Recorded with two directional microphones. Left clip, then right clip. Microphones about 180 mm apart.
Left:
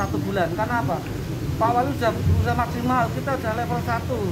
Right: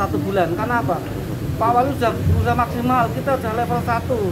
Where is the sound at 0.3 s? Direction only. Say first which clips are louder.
Right 3 dB; 10° right (ahead or behind).